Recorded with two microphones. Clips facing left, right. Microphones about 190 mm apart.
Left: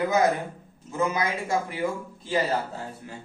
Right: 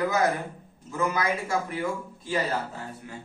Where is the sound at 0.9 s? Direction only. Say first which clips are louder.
Left 1 dB; 20° left (ahead or behind).